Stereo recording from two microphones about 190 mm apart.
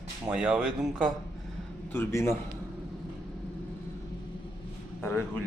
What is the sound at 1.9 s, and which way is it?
Speech, 15° left (ahead or behind).